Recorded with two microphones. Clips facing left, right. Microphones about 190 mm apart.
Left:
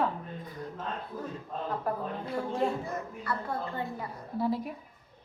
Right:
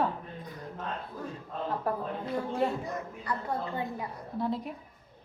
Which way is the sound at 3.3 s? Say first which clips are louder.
Even; 15° right (ahead or behind).